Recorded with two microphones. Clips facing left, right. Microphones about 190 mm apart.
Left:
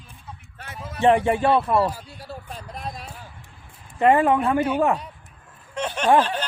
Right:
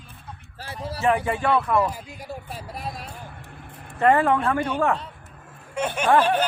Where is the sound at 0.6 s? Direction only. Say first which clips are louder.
Right 4 dB; 30° right (ahead or behind).